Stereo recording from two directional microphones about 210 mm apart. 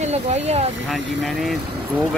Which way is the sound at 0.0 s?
30° right (ahead or behind).